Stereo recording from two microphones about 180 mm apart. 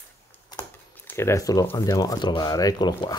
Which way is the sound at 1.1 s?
15° left (ahead or behind).